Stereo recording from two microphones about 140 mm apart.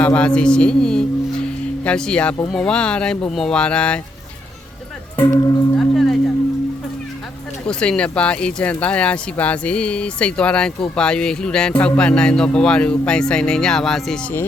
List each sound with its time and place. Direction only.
0.0 s speech: 10° left (ahead or behind)
5.1 s speech: 20° left (ahead or behind)
5.7 s music: centre (ahead or behind)
7.7 s speech: 5° left (ahead or behind)